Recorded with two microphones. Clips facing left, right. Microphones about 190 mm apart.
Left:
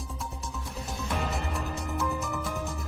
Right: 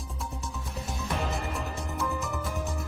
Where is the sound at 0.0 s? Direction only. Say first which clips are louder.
Even; centre (ahead or behind).